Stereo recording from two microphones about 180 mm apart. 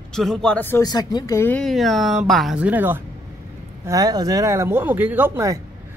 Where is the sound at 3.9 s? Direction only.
20° right (ahead or behind).